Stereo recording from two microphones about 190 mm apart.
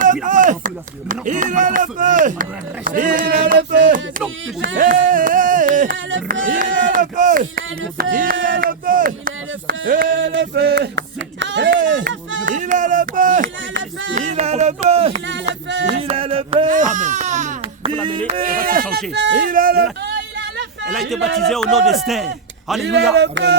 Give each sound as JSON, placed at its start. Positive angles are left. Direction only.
{"t": 0.0, "sound": "speech", "side_deg": -45}
{"t": 4.8, "sound": "a sound", "side_deg": -45}
{"t": 6.4, "sound": "speech", "side_deg": -45}
{"t": 10.2, "sound": "a sound", "side_deg": -75}
{"t": 11.8, "sound": "speech", "side_deg": -45}
{"t": 16.6, "sound": "baby cry", "side_deg": -40}
{"t": 18.4, "sound": "speech", "side_deg": -50}
{"t": 19.5, "sound": "speech", "side_deg": -50}
{"t": 20.8, "sound": "speech", "side_deg": 0}
{"t": 23.1, "sound": "music", "side_deg": -60}